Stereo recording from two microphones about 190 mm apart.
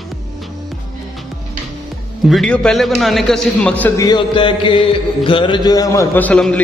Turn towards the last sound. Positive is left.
turn(degrees=5)  # may be behind; listen again after turning